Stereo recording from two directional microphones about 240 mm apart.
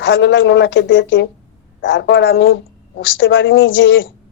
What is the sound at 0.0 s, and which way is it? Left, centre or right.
Speech, left.